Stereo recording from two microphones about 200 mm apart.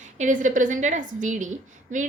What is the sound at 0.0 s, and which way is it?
A woman's voice, 40° right (ahead or behind).